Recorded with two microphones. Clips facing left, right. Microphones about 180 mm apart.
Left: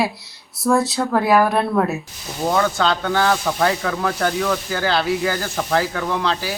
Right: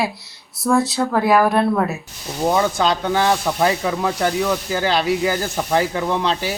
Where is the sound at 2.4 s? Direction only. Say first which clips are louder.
Right 1 dB; 15° right (ahead or behind).